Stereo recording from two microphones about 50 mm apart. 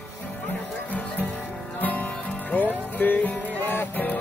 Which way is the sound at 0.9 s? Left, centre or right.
Left.